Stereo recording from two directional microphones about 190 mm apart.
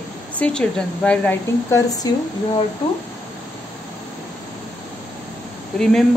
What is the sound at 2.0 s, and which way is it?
Speech, 20° left (ahead or behind).